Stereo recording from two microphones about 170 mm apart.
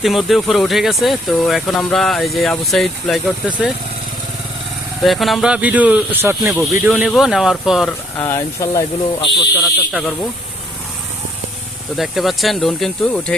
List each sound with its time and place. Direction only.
0.0 s speech: centre (ahead or behind)
5.0 s speech: centre (ahead or behind)
8.2 s speech: 15° left (ahead or behind)
9.6 s speech: centre (ahead or behind)
11.9 s speech: centre (ahead or behind)